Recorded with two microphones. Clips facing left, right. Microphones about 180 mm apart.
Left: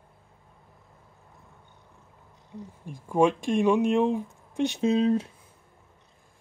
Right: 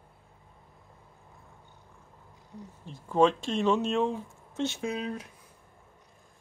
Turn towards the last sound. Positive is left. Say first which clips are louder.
# left 10 dB
turn(degrees=30)  # may be behind; listen again after turning